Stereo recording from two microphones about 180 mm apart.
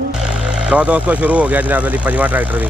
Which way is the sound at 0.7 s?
5° right (ahead or behind).